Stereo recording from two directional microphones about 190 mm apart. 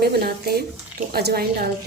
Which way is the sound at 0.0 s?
55° right (ahead or behind).